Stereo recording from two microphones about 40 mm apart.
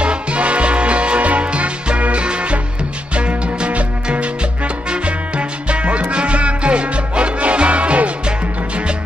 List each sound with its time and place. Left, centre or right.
0.0 s music: right